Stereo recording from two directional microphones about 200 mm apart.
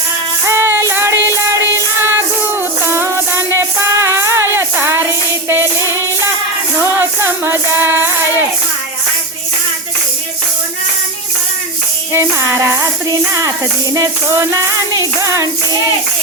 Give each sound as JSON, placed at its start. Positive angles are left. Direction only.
{"t": 0.4, "sound": "music", "side_deg": -10}
{"t": 7.0, "sound": "music", "side_deg": -10}
{"t": 12.1, "sound": "music", "side_deg": -15}